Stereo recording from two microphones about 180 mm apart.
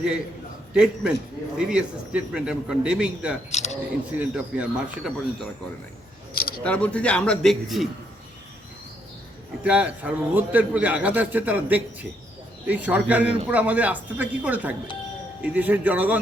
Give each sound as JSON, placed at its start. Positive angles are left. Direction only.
{"t": 0.7, "sound": "a man's voice", "side_deg": -5}
{"t": 3.5, "sound": "speech", "side_deg": 40}
{"t": 4.1, "sound": "a man's voice", "side_deg": -5}
{"t": 6.6, "sound": "a man's voice", "side_deg": 5}
{"t": 9.6, "sound": "a man's voice", "side_deg": -5}